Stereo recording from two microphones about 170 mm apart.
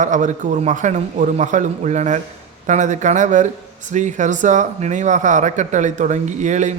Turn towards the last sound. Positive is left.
turn(degrees=-45)  # may be behind; listen again after turning